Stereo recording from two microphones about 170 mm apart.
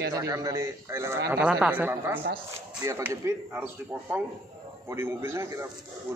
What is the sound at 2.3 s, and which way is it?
A man's voice, 20° right (ahead or behind).